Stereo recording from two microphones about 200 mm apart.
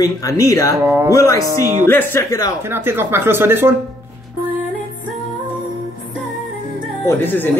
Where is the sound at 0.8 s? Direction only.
15° right (ahead or behind).